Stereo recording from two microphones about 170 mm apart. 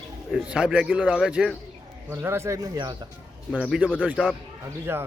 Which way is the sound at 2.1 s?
15° right (ahead or behind).